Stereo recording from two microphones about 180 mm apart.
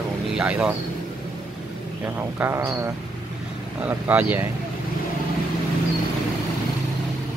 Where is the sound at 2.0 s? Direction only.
15° right (ahead or behind).